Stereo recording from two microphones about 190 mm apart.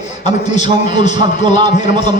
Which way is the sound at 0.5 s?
40° left (ahead or behind).